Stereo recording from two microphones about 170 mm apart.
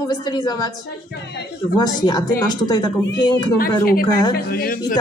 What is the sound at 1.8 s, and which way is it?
A woman's voice, 25° left (ahead or behind).